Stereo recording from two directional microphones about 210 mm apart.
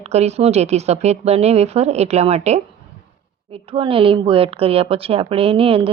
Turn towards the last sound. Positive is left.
turn(degrees=-25)  # may be behind; listen again after turning